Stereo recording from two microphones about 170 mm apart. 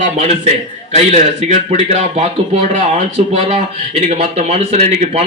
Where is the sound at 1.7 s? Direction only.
40° right (ahead or behind).